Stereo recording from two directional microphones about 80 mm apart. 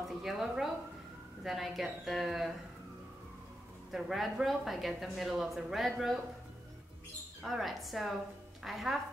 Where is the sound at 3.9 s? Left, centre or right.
Centre.